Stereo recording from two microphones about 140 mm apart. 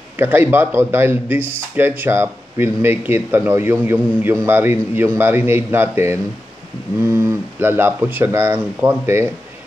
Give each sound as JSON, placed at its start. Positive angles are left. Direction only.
{"t": 0.2, "sound": "a man's voice", "side_deg": -15}